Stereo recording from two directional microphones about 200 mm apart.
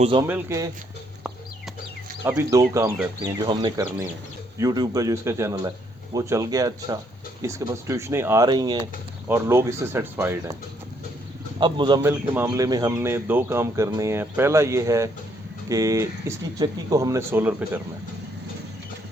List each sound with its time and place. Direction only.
0.0 s speech: 25° right (ahead or behind)
0.3 s speech: 10° right (ahead or behind)
2.2 s speech: 15° right (ahead or behind)
11.6 s speech: 20° right (ahead or behind)
12.2 s speech: 10° right (ahead or behind)